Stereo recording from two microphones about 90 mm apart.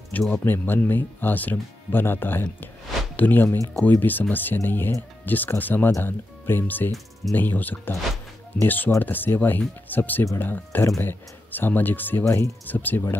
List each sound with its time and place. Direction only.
0.3 s speech: 25° left (ahead or behind)
3.8 s speech: 20° left (ahead or behind)